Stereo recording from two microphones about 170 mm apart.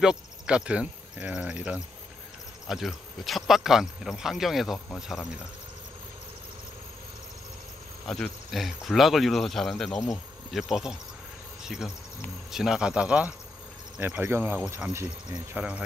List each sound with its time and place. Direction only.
0.0 s speech: 5° right (ahead or behind)
8.1 s speech: centre (ahead or behind)
11.6 s insect: 5° right (ahead or behind)
12.4 s speech: 5° right (ahead or behind)